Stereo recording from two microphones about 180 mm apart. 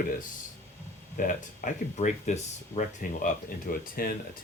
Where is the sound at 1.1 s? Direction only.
50° left (ahead or behind).